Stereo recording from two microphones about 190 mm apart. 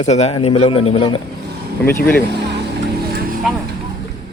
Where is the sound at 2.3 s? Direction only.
60° right (ahead or behind).